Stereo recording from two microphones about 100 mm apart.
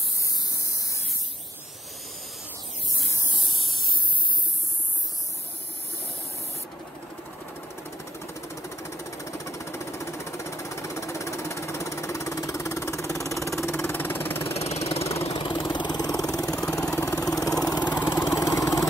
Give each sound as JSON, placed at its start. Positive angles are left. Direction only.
{"t": 3.3, "sound": "spray", "side_deg": 50}
{"t": 8.6, "sound": "jackhammer", "side_deg": 30}
{"t": 14.5, "sound": "vehicle", "side_deg": 90}
{"t": 15.4, "sound": "vehicle", "side_deg": 50}
{"t": 17.8, "sound": "vehicle", "side_deg": 20}
{"t": 18.1, "sound": "vehicle", "side_deg": 35}